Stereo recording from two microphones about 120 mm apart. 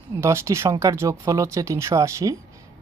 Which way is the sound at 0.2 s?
25° right (ahead or behind).